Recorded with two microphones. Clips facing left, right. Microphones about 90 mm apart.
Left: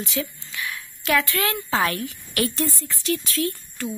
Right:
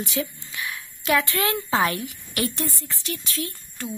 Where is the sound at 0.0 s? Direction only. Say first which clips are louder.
Right 1 dB; 20° right (ahead or behind).